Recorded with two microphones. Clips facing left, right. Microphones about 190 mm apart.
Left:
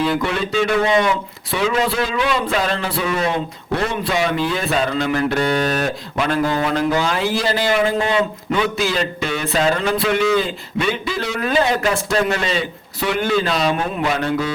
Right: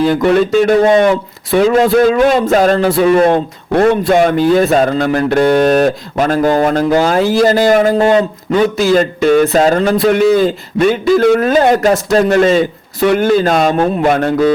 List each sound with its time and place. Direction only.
0.0 s speech: 45° right (ahead or behind)